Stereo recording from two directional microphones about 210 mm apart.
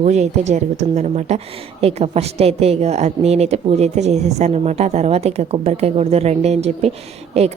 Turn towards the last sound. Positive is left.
turn(degrees=-30)  # may be behind; listen again after turning